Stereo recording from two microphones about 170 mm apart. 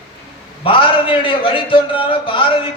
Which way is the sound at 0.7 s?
30° left (ahead or behind).